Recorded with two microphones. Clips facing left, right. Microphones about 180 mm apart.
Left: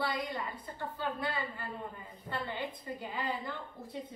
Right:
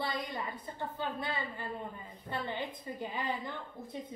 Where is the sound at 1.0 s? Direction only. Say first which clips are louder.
Left 2 dB; 20° right (ahead or behind).